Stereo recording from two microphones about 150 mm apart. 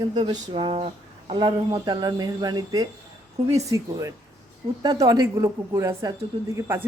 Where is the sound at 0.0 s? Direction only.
30° right (ahead or behind).